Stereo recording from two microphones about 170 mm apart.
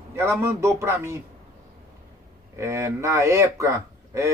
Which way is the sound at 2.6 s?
20° right (ahead or behind).